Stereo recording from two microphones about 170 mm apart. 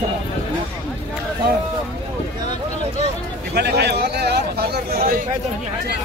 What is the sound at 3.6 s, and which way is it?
Speech, 80° right.